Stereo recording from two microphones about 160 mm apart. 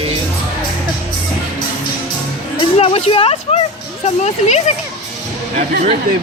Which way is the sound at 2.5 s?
35° left (ahead or behind).